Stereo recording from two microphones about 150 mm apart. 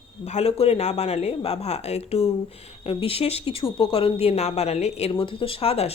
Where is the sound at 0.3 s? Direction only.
45° left (ahead or behind).